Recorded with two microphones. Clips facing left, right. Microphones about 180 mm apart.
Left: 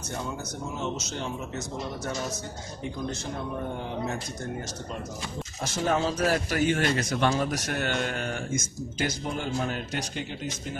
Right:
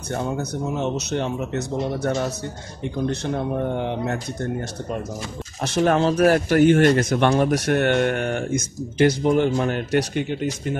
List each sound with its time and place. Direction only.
0.1 s speech: 60° right (ahead or behind)
5.6 s speech: 65° right (ahead or behind)